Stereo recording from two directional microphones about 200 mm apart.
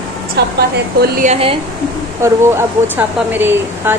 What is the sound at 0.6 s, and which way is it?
Speech, 50° right (ahead or behind).